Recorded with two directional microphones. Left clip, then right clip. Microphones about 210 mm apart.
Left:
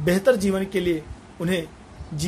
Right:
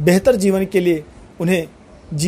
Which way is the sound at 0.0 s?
30° right (ahead or behind).